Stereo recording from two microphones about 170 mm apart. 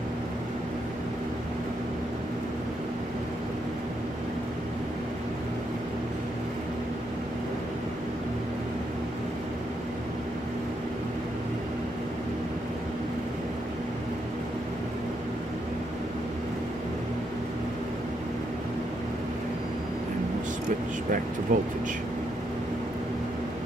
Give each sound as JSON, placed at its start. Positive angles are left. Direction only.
{"t": 21.5, "sound": "speech", "side_deg": -50}